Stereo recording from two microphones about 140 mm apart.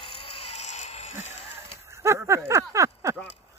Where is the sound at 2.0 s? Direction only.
20° right (ahead or behind).